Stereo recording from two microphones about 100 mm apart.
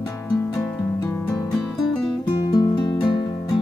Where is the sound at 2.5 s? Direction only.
40° left (ahead or behind).